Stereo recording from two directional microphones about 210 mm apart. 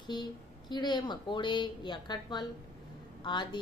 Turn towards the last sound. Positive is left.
turn(degrees=20)  # may be behind; listen again after turning